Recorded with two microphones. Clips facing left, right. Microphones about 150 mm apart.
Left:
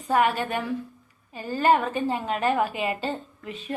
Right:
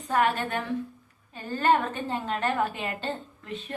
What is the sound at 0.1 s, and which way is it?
A woman's voice, 10° left (ahead or behind).